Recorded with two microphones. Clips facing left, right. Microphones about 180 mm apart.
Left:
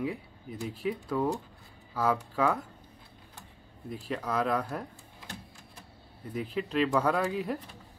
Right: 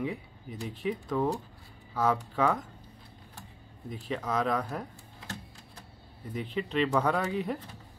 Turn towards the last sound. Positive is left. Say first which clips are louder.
# left 1 dB
turn(degrees=0)  # may be behind; listen again after turning